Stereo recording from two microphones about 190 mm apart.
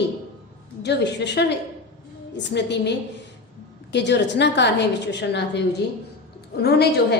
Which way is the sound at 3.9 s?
65° left (ahead or behind).